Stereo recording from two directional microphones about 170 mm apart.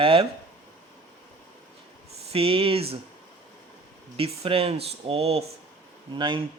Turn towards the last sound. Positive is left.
turn(degrees=-30)  # may be behind; listen again after turning